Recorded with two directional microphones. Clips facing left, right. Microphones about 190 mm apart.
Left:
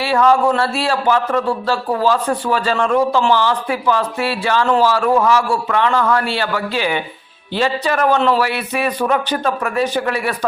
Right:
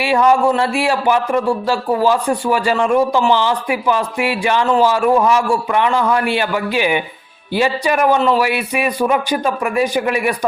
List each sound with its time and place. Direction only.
0.0 s a man's voice: 15° right (ahead or behind)